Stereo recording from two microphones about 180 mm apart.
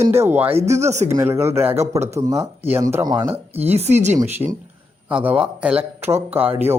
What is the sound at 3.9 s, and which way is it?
Speech, 40° right (ahead or behind).